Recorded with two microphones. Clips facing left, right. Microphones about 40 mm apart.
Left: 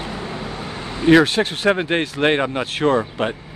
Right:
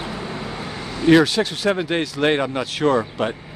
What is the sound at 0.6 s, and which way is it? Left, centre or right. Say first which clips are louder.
Vehicle: left 1 dB; left.